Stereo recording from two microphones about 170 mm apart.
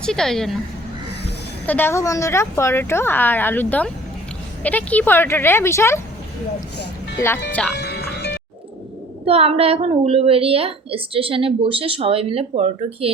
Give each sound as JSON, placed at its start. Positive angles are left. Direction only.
{"t": 0.0, "sound": "a woman's voice", "side_deg": 5}
{"t": 1.6, "sound": "a woman's voice", "side_deg": 10}
{"t": 7.5, "sound": "a woman's voice", "side_deg": 5}
{"t": 7.8, "sound": "music", "side_deg": 75}
{"t": 9.2, "sound": "a woman's voice", "side_deg": -35}